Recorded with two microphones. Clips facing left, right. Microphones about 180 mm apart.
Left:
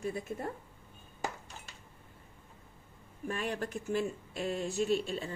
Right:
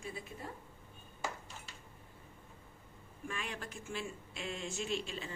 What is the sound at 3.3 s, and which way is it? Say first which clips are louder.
Speech: left 8 dB; 40° left (ahead or behind).